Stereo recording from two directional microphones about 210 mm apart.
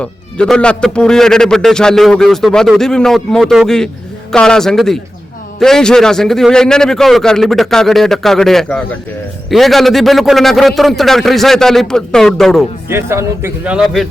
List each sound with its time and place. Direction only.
0.0 s speech: 5° left (ahead or behind)
12.9 s a man's voice: 10° right (ahead or behind)